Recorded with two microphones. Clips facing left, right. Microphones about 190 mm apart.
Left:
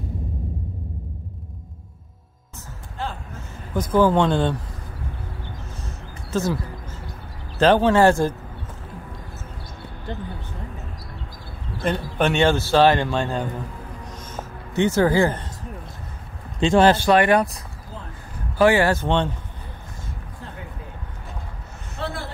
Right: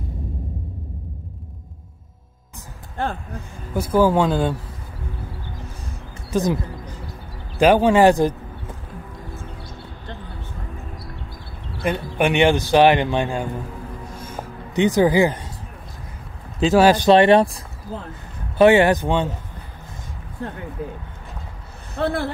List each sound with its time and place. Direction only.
3.0 s a sound: 55° right (ahead or behind)
3.7 s speech: 10° right (ahead or behind)
6.3 s speech: 15° right (ahead or behind)
11.8 s speech: 10° right (ahead or behind)
14.2 s music: 15° right (ahead or behind)
16.5 s speech: 5° right (ahead or behind); by 17.6 s 25° right (ahead or behind)
18.6 s speech: 20° right (ahead or behind)
22.0 s a man's voice: 55° right (ahead or behind)